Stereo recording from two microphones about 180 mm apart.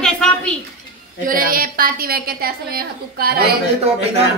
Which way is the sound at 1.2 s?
50° right (ahead or behind).